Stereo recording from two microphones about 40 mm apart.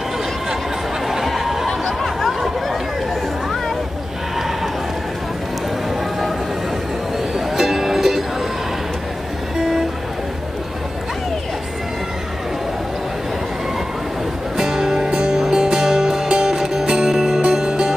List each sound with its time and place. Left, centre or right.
1.0 s a sound: centre
7.3 s music: centre
9.6 s music: centre
14.6 s music: centre